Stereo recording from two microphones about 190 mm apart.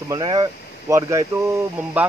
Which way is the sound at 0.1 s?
25° right (ahead or behind).